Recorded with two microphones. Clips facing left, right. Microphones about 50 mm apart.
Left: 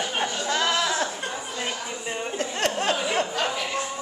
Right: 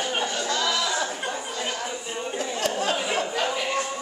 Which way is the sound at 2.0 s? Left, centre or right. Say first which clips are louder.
Left 1 dB; left.